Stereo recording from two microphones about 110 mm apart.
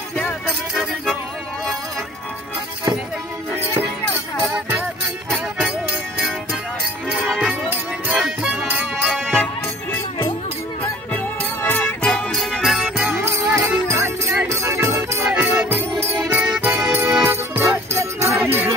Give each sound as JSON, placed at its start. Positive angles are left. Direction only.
{"t": 7.1, "sound": "music", "side_deg": 0}
{"t": 9.0, "sound": "music", "side_deg": 5}
{"t": 12.0, "sound": "music", "side_deg": 5}
{"t": 13.2, "sound": "music", "side_deg": -25}